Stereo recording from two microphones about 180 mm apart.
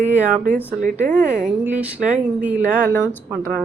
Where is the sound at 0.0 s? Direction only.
10° right (ahead or behind).